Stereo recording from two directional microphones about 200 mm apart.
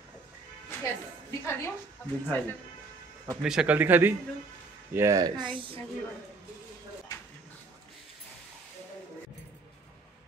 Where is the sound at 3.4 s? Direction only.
5° right (ahead or behind); by 5.8 s 25° right (ahead or behind).